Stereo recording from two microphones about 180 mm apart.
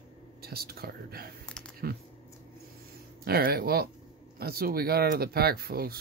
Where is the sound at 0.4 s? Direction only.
60° right (ahead or behind).